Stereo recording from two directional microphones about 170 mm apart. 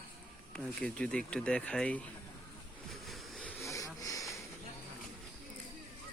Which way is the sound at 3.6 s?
20° left (ahead or behind).